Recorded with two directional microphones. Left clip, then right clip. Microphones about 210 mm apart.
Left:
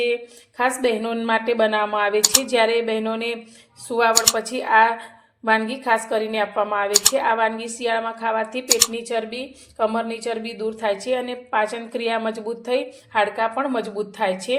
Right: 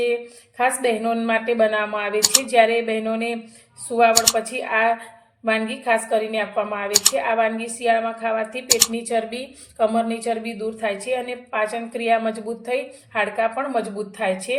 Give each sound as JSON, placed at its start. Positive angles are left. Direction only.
{"t": 0.1, "sound": "a woman's voice", "side_deg": 35}
{"t": 2.2, "sound": "speech", "side_deg": 0}
{"t": 2.5, "sound": "a woman's voice", "side_deg": 30}
{"t": 4.1, "sound": "speech", "side_deg": 0}
{"t": 4.4, "sound": "a woman's voice", "side_deg": 35}
{"t": 6.9, "sound": "speech", "side_deg": 0}
{"t": 7.2, "sound": "a woman's voice", "side_deg": 35}
{"t": 8.7, "sound": "speech", "side_deg": 0}
{"t": 9.0, "sound": "a woman's voice", "side_deg": 20}